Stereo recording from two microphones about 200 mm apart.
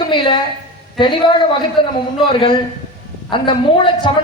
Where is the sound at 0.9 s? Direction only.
25° left (ahead or behind).